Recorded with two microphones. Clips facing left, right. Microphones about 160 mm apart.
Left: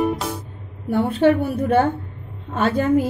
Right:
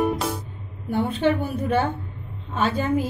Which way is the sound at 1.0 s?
50° left (ahead or behind).